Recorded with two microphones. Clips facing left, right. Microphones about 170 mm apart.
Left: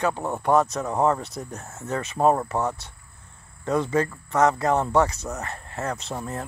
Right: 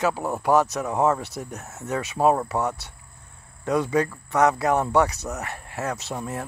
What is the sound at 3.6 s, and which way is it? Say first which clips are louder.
Speech: right 1 dB; 10° right (ahead or behind).